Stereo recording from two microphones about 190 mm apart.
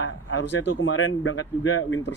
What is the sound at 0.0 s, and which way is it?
Speech, 70° left (ahead or behind).